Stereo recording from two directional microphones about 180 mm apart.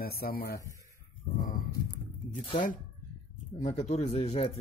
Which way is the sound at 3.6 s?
35° left (ahead or behind).